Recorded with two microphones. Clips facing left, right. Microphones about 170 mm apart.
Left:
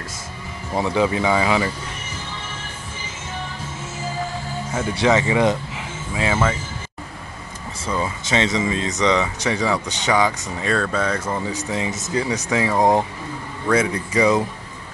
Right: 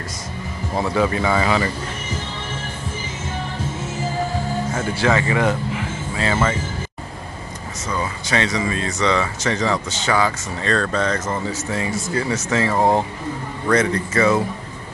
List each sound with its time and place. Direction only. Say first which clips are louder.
0.7 s speech: even; 15° left (ahead or behind)
5.0 s speech: left 2 dB; 15° left (ahead or behind)
8.0 s speech: left 1 dB; 25° left (ahead or behind)